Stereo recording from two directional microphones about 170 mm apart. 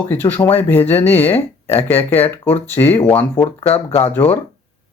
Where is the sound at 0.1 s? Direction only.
10° left (ahead or behind).